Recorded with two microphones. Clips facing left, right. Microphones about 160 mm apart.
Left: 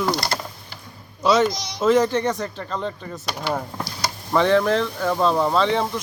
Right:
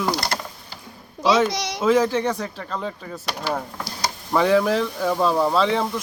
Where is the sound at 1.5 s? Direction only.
75° right (ahead or behind).